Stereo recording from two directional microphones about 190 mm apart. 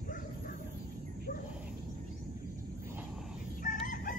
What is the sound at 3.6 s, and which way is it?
Chicken, 45° left (ahead or behind).